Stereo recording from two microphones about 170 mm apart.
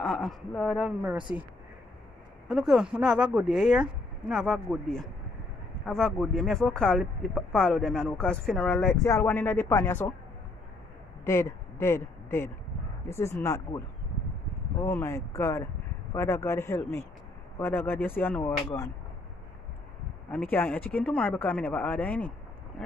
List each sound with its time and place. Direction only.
0.0 s speech: centre (ahead or behind)
2.4 s speech: centre (ahead or behind)
11.2 s speech: 15° left (ahead or behind)
14.8 s speech: 15° left (ahead or behind)
20.2 s speech: 10° left (ahead or behind)